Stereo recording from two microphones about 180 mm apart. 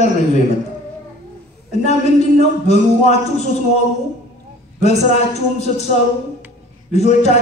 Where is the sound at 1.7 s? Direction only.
40° left (ahead or behind).